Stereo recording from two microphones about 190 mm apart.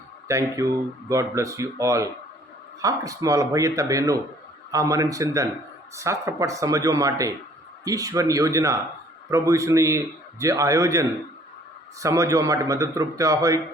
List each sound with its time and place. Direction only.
0.3 s speech: 15° right (ahead or behind)